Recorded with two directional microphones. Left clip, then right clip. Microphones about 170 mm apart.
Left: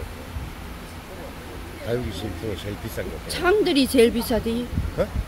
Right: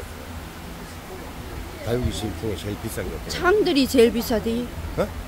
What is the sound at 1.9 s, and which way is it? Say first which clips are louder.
Speech: right 1 dB; 90° right.